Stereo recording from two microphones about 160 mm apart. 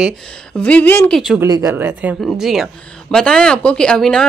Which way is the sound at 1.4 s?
20° right (ahead or behind).